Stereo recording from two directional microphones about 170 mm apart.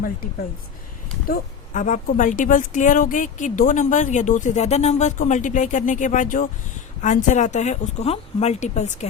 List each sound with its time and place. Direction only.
1.3 s a woman's voice: 50° left (ahead or behind)